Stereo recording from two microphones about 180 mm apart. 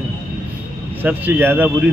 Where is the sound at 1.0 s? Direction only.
10° right (ahead or behind).